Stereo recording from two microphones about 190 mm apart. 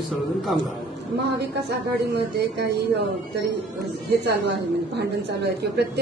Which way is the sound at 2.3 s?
60° right (ahead or behind).